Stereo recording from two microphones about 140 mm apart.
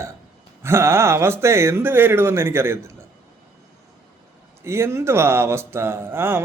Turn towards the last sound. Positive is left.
turn(degrees=-15)  # may be behind; listen again after turning